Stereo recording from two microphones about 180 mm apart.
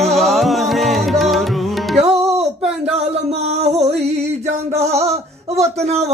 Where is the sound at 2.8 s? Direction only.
35° right (ahead or behind).